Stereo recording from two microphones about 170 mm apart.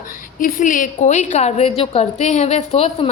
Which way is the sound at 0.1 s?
55° left (ahead or behind).